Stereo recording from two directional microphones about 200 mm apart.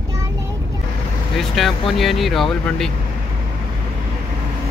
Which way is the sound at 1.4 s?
Centre (ahead or behind).